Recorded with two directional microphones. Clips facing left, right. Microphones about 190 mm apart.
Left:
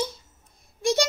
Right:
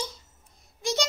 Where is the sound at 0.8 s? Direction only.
55° left (ahead or behind).